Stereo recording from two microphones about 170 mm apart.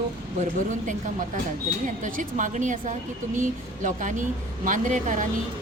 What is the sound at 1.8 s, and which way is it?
Speech, 50° right (ahead or behind).